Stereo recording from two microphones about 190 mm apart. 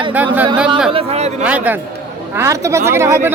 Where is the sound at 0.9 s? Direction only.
30° right (ahead or behind).